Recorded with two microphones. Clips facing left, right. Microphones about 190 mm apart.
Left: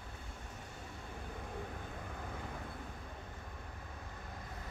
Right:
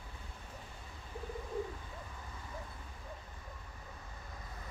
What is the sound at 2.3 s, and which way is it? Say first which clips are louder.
Vehicle: left 6 dB; 60° left (ahead or behind).